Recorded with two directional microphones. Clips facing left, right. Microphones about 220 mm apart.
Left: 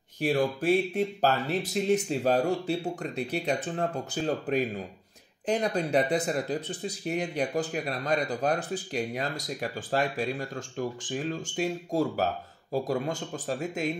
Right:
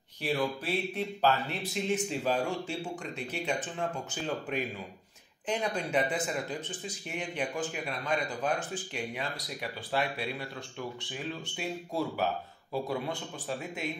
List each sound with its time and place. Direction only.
0.2 s speech: 50° left (ahead or behind)